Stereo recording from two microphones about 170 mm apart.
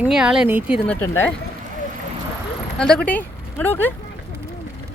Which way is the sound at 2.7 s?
5° left (ahead or behind).